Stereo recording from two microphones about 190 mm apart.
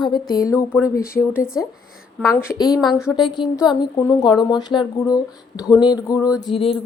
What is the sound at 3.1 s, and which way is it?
A woman's voice, 25° left (ahead or behind).